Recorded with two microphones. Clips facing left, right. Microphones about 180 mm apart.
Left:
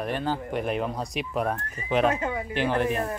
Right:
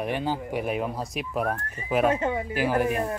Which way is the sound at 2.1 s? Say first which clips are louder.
Right 3 dB; 25° right (ahead or behind).